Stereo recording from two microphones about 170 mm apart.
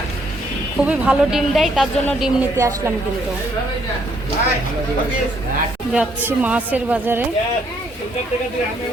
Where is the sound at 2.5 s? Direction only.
15° right (ahead or behind).